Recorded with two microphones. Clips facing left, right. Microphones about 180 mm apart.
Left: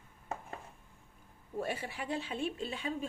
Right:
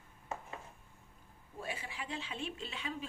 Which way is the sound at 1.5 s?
40° left (ahead or behind).